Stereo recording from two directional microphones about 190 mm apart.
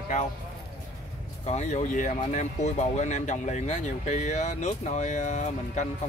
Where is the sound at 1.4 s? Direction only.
35° left (ahead or behind).